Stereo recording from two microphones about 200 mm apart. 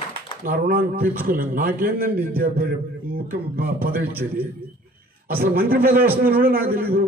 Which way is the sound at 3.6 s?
45° right (ahead or behind).